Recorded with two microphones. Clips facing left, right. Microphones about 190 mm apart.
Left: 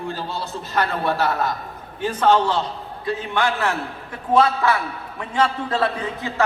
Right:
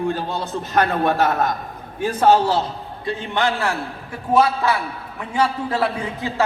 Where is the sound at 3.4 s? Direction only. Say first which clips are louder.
Right 1 dB; 15° right (ahead or behind).